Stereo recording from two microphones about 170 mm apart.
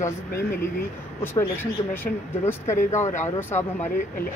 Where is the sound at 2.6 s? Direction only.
45° left (ahead or behind).